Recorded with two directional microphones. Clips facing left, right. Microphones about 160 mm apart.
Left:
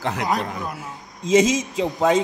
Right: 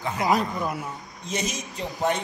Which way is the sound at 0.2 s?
Centre (ahead or behind).